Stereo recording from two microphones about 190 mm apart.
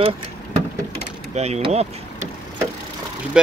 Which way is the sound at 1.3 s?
35° right (ahead or behind).